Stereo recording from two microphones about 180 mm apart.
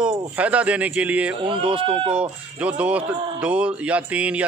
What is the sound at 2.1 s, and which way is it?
Speech, 5° right (ahead or behind).